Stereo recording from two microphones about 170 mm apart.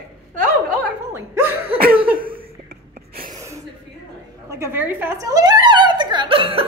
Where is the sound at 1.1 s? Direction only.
15° right (ahead or behind).